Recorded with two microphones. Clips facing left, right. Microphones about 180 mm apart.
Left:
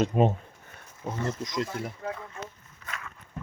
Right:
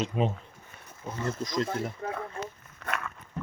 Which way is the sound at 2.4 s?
30° right (ahead or behind).